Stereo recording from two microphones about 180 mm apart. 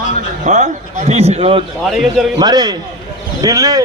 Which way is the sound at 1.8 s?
Centre (ahead or behind).